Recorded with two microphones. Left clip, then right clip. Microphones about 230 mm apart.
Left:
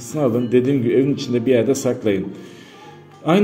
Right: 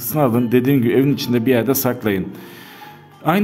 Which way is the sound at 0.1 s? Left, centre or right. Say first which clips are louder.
Right 1 dB; right.